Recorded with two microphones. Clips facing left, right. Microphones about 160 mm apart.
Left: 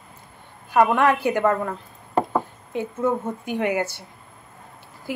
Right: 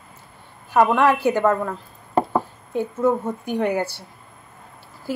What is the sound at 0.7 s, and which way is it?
Speech, 20° right (ahead or behind).